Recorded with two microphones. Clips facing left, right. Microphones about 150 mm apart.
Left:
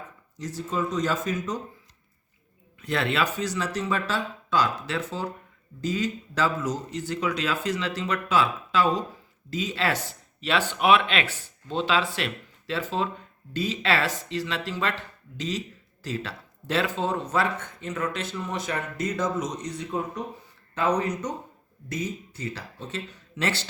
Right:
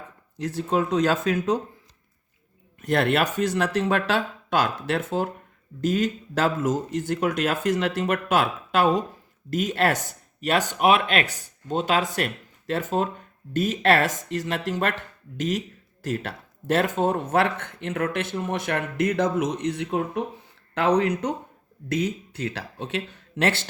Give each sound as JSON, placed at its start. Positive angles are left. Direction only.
{"t": 0.3, "sound": "speech", "side_deg": -65}
{"t": 2.8, "sound": "speech", "side_deg": -50}